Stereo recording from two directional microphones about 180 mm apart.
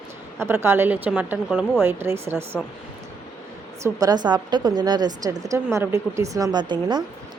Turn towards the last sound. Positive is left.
turn(degrees=-25)  # may be behind; listen again after turning